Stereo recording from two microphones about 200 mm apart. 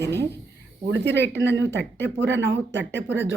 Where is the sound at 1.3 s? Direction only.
65° right (ahead or behind).